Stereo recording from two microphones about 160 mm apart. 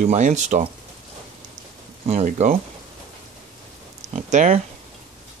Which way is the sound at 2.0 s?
45° right (ahead or behind).